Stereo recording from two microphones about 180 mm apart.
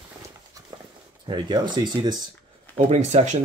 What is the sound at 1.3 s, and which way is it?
Speech, 25° right (ahead or behind).